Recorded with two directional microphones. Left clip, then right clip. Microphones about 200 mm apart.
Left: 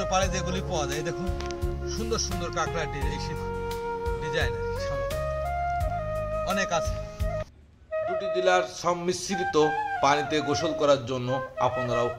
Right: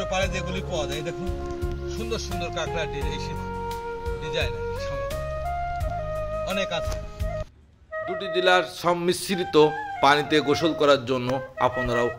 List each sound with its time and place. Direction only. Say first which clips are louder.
2.1 s speech: left 1 dB; 20° left (ahead or behind)
6.1 s music: even; centre (ahead or behind)
8.3 s speech: right 4 dB; 15° right (ahead or behind)